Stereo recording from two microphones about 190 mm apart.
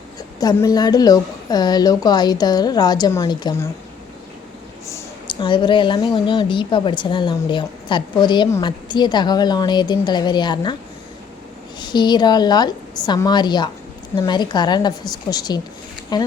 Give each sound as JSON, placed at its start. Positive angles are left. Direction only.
{"t": 0.3, "sound": "a woman's voice", "side_deg": 20}
{"t": 4.9, "sound": "a woman's voice", "side_deg": 20}
{"t": 11.8, "sound": "a woman's voice", "side_deg": 25}